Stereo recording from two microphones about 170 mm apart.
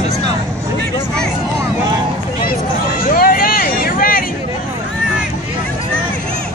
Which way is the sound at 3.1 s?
60° left (ahead or behind).